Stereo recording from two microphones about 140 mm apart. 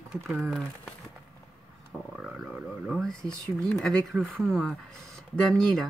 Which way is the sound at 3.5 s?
5° left (ahead or behind).